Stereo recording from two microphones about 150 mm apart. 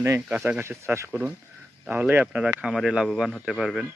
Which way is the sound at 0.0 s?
15° right (ahead or behind).